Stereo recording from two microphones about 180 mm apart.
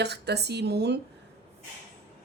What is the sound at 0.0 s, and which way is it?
Speech, 65° right (ahead or behind).